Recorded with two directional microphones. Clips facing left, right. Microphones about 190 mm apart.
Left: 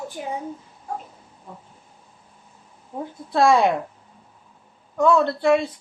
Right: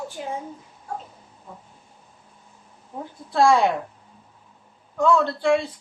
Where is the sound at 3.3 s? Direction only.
20° left (ahead or behind).